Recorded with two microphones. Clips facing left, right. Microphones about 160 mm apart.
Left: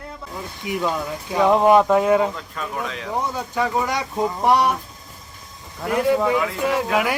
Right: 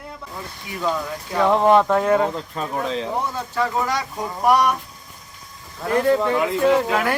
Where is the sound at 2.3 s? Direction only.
30° right (ahead or behind).